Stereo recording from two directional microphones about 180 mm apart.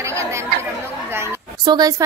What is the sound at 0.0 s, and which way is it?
Chatter, 15° right (ahead or behind).